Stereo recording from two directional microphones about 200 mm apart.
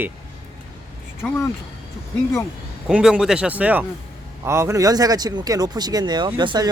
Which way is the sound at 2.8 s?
5° right (ahead or behind).